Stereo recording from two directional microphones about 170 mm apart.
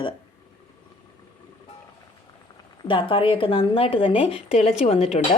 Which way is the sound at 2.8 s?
30° left (ahead or behind).